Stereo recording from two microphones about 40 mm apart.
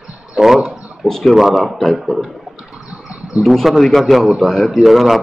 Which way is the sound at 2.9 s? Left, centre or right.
Right.